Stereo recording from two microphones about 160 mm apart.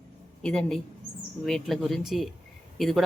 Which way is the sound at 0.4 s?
5° left (ahead or behind).